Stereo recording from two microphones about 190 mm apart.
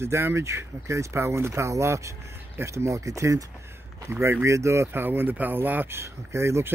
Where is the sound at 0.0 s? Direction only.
15° right (ahead or behind).